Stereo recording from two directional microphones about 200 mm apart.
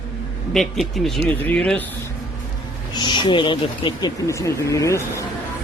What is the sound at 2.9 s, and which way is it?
Speech, 25° left (ahead or behind).